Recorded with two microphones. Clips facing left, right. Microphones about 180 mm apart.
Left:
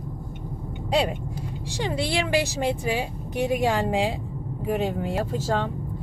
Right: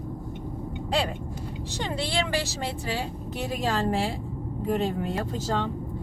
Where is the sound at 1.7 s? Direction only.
10° left (ahead or behind).